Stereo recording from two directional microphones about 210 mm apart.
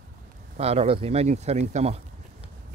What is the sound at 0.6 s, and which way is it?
Speech, 30° right (ahead or behind).